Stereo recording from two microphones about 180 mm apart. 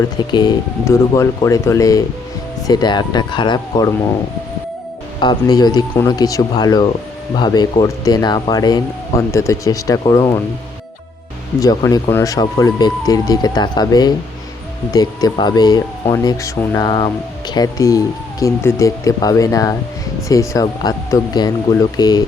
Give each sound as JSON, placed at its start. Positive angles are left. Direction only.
{"t": 0.2, "sound": "speech", "side_deg": 25}
{"t": 5.2, "sound": "speech", "side_deg": 25}
{"t": 11.6, "sound": "speech", "side_deg": 20}